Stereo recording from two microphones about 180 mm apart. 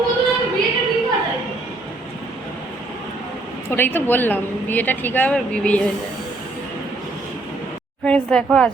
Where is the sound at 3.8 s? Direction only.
10° left (ahead or behind).